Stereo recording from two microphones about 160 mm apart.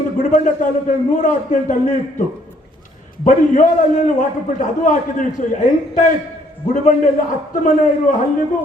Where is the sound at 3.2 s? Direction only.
55° left (ahead or behind).